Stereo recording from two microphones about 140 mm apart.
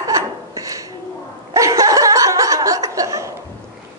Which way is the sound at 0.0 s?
25° right (ahead or behind).